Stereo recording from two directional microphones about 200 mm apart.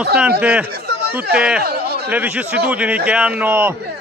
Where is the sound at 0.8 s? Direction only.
55° right (ahead or behind).